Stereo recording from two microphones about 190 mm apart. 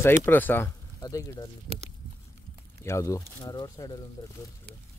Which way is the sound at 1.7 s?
35° right (ahead or behind).